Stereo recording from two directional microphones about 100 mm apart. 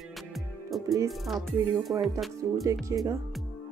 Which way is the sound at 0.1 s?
Centre (ahead or behind).